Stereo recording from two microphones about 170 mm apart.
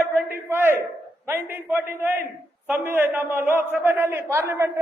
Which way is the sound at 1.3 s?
10° right (ahead or behind).